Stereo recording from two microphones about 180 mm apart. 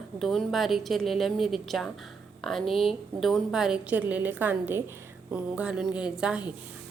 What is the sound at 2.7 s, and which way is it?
Speech, 30° left (ahead or behind).